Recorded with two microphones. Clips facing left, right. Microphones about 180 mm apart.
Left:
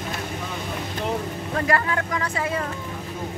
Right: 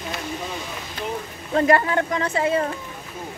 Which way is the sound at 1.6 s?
30° right (ahead or behind).